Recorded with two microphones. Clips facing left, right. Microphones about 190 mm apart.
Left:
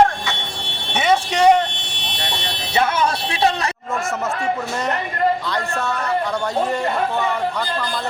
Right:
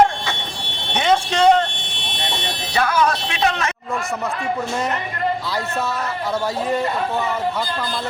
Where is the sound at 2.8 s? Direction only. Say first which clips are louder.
Even; 25° left (ahead or behind).